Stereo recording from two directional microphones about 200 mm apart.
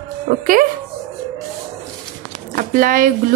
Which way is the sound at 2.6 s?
45° right (ahead or behind).